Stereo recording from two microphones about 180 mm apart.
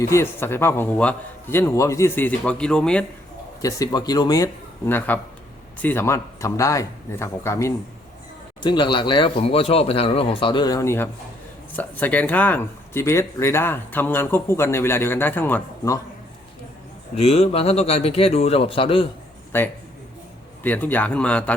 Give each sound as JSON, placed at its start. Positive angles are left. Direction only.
{"t": 0.1, "sound": "speech", "side_deg": 15}
{"t": 3.6, "sound": "speech", "side_deg": 20}
{"t": 4.9, "sound": "speech", "side_deg": 10}
{"t": 8.6, "sound": "speech", "side_deg": 25}
{"t": 17.2, "sound": "speech", "side_deg": 35}
{"t": 19.5, "sound": "speech", "side_deg": 10}